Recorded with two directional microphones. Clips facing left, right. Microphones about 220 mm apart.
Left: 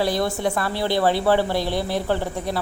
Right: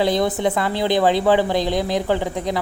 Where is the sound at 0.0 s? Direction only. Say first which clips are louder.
Right 3 dB; 20° right (ahead or behind).